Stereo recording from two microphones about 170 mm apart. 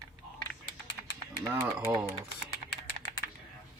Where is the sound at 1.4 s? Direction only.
15° right (ahead or behind).